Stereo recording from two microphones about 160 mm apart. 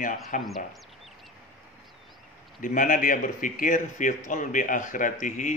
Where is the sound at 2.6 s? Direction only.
55° left (ahead or behind).